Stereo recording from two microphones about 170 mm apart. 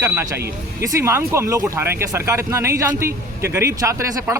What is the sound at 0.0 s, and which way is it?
A man's voice, 15° right (ahead or behind).